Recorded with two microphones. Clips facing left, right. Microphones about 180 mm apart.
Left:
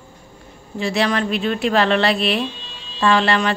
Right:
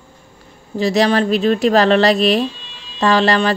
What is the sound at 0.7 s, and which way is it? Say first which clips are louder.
A woman's voice: right 5 dB; 35° right (ahead or behind).